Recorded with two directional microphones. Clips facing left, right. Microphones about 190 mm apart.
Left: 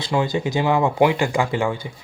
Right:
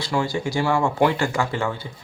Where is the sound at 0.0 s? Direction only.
20° left (ahead or behind).